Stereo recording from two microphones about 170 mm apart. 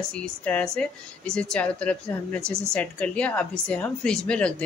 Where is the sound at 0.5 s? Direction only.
10° left (ahead or behind).